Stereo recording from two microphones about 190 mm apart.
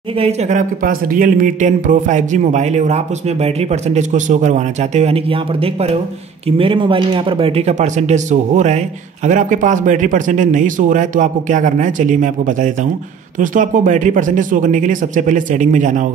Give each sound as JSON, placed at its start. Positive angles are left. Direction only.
{"t": 0.2, "sound": "speech", "side_deg": -35}